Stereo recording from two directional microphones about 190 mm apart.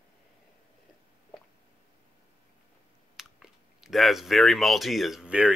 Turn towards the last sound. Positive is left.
turn(degrees=-5)  # may be behind; listen again after turning